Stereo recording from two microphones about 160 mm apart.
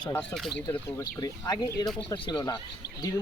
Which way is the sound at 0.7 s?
20° left (ahead or behind).